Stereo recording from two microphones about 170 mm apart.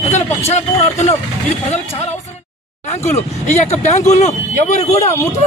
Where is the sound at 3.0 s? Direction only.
40° left (ahead or behind).